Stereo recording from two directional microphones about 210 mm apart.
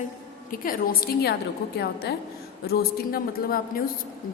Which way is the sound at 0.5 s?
40° left (ahead or behind).